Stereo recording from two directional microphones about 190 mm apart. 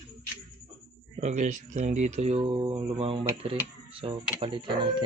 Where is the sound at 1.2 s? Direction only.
40° right (ahead or behind).